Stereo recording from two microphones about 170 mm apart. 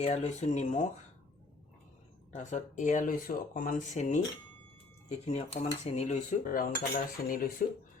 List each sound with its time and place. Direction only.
0.0 s speech: 40° left (ahead or behind)
2.3 s speech: 45° left (ahead or behind)
6.5 s cutlery: 60° left (ahead or behind)